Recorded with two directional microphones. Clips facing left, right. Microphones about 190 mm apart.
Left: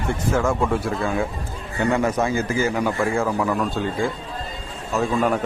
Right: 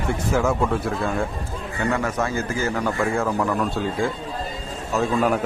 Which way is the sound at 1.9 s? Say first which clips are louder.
Left 4 dB; 20° left (ahead or behind).